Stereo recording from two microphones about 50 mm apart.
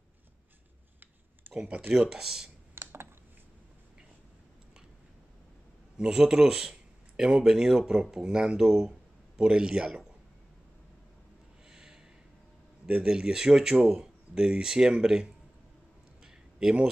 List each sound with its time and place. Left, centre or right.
1.7 s speech: right
2.0 s speech: centre
2.7 s computer keyboard: right
5.9 s speech: centre
11.7 s a sound: centre
13.0 s speech: centre
16.5 s speech: centre